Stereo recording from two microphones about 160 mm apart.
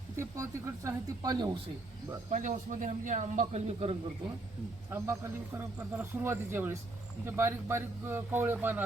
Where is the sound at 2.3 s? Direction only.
50° right (ahead or behind).